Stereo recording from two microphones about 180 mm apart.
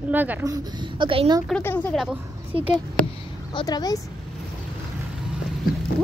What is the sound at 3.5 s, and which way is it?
Speech, 25° left (ahead or behind).